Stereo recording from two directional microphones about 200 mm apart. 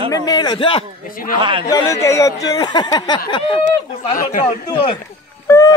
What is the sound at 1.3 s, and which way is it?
Speech, 25° right (ahead or behind).